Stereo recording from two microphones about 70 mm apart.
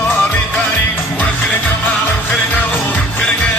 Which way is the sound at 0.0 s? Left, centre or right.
Left.